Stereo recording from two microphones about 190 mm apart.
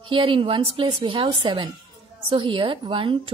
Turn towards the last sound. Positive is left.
turn(degrees=-25)  # may be behind; listen again after turning